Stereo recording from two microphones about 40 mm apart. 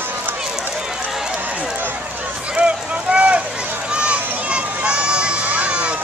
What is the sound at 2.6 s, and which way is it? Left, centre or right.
Vehicle, right.